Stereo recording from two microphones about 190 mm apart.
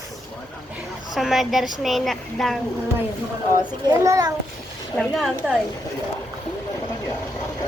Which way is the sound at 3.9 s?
15° right (ahead or behind).